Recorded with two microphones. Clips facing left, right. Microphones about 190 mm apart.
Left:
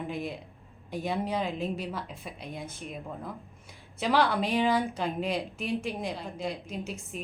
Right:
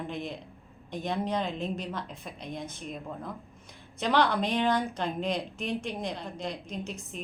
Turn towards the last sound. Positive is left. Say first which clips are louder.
# left 1 dB
turn(degrees=5)  # may be behind; listen again after turning